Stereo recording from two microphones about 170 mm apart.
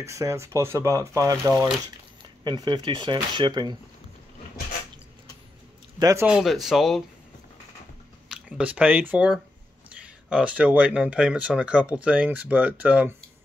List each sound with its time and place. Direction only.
0.0 s speech: 15° right (ahead or behind)
5.9 s speech: 20° right (ahead or behind)
6.2 s speech: 5° right (ahead or behind)
8.3 s speech: 5° right (ahead or behind)